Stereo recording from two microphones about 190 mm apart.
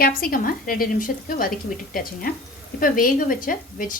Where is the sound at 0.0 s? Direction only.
50° left (ahead or behind).